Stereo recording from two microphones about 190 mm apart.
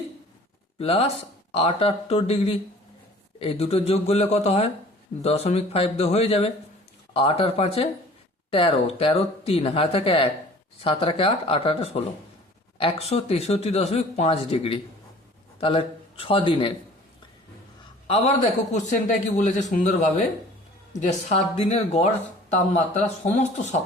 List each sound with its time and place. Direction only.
0.8 s speech: 30° left (ahead or behind)
18.1 s speech: 35° left (ahead or behind)